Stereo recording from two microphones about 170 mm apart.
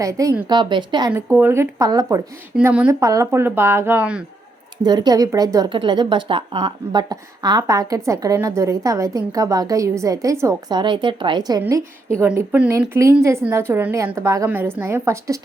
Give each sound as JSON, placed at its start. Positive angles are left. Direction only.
{"t": 0.0, "sound": "speech", "side_deg": -20}
{"t": 1.1, "sound": "a woman's voice", "side_deg": -10}
{"t": 2.6, "sound": "a woman's voice", "side_deg": -10}
{"t": 4.8, "sound": "speech", "side_deg": -25}
{"t": 12.1, "sound": "a woman's voice", "side_deg": -15}